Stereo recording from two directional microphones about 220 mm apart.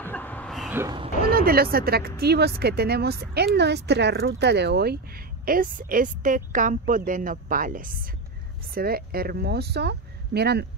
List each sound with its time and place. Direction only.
0.0 s a sound: 10° left (ahead or behind)
0.7 s speech: 20° right (ahead or behind)
1.3 s speech: 45° right (ahead or behind)